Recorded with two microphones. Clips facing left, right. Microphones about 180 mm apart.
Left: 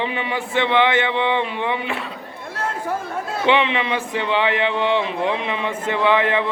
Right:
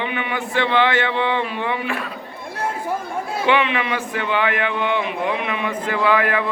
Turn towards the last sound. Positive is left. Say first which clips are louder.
# left 1 dB
turn(degrees=25)  # may be behind; listen again after turning